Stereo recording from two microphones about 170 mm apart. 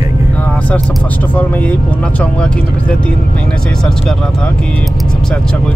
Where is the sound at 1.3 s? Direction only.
10° left (ahead or behind).